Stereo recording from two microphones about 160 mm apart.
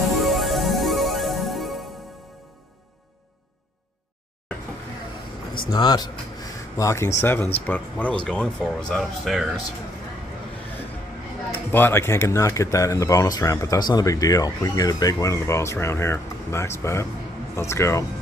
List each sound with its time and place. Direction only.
0.2 s music: centre (ahead or behind)
5.6 s speech: 25° left (ahead or behind); by 9.5 s centre (ahead or behind)
11.7 s speech: 15° left (ahead or behind)